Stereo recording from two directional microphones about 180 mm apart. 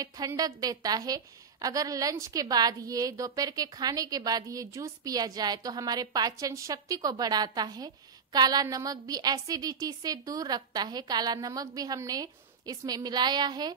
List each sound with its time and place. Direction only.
0.0 s a woman's voice: 20° right (ahead or behind)